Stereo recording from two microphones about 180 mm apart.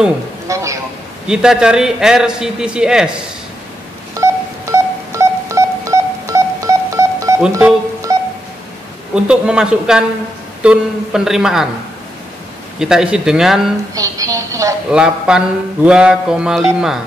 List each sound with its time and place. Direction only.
0.5 s a sound: 15° right (ahead or behind)
1.2 s mantra: 5° right (ahead or behind)
4.1 s a sound: 15° right (ahead or behind)
9.1 s mantra: 5° right (ahead or behind)
12.7 s mantra: 5° right (ahead or behind)
13.9 s a woman's voice: 20° right (ahead or behind)
14.9 s mantra: 5° right (ahead or behind)